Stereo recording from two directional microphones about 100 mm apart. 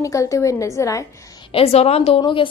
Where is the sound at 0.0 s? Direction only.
30° left (ahead or behind).